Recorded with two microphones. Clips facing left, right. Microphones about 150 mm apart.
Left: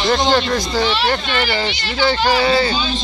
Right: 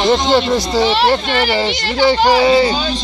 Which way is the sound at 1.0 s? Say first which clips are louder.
Right 5 dB; 30° right (ahead or behind).